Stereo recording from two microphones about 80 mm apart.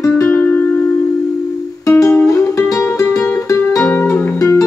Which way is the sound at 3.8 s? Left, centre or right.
Left.